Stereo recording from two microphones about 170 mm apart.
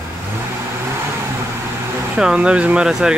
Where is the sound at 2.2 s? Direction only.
5° right (ahead or behind).